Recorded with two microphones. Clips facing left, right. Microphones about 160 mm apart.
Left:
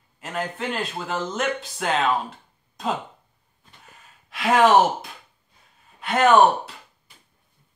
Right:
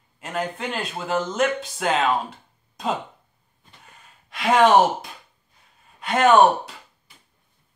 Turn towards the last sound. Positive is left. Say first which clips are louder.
# right 1 dB
turn(degrees=0)  # may be behind; listen again after turning